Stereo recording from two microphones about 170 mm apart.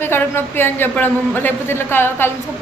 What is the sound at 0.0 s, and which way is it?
A man's voice, 15° left (ahead or behind).